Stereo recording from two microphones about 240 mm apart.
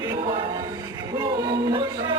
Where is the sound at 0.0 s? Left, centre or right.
Right.